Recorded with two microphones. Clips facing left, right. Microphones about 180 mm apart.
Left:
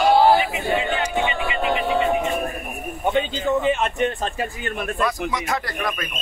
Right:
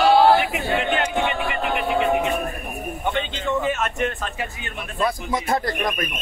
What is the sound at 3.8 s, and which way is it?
Speech, 30° left (ahead or behind).